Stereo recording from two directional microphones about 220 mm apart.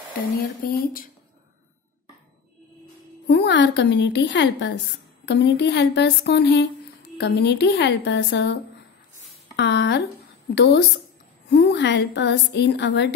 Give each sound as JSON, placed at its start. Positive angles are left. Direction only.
{"t": 0.4, "sound": "speech", "side_deg": 40}
{"t": 3.3, "sound": "a woman's voice", "side_deg": 50}
{"t": 9.6, "sound": "a woman's voice", "side_deg": 50}